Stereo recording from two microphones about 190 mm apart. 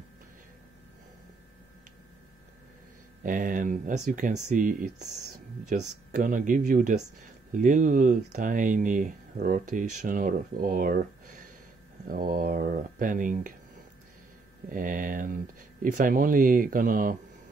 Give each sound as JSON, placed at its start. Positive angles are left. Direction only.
{"t": 3.3, "sound": "speech", "side_deg": -45}
{"t": 14.7, "sound": "speech", "side_deg": -45}